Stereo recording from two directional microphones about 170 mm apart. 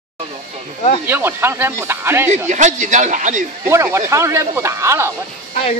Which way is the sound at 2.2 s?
45° right (ahead or behind).